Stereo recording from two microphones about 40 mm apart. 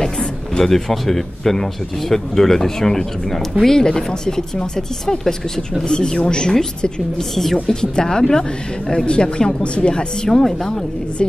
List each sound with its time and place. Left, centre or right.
0.6 s speech: centre
10.4 s speech: centre